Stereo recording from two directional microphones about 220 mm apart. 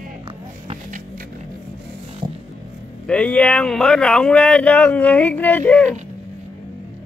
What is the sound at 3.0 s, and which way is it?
Speech, 5° left (ahead or behind).